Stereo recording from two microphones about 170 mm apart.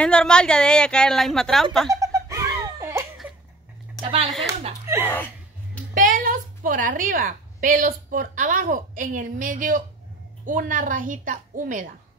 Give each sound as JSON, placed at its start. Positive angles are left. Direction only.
{"t": 0.0, "sound": "a woman's voice", "side_deg": 5}
{"t": 1.9, "sound": "giggle", "side_deg": -20}
{"t": 4.0, "sound": "speech", "side_deg": -35}
{"t": 5.0, "sound": "speech", "side_deg": 10}
{"t": 5.9, "sound": "a woman's voice", "side_deg": -50}